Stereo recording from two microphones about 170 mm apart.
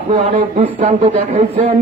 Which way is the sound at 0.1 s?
30° right (ahead or behind).